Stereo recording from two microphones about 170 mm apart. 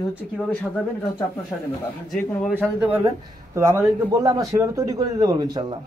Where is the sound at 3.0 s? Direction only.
15° right (ahead or behind).